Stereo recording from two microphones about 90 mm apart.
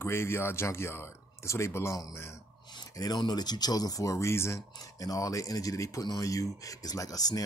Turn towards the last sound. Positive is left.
turn(degrees=45)  # may be behind; listen again after turning